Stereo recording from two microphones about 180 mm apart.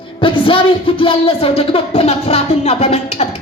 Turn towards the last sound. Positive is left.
turn(degrees=35)  # may be behind; listen again after turning